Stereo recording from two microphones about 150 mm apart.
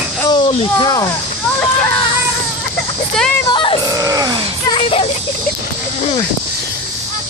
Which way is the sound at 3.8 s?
25° right (ahead or behind).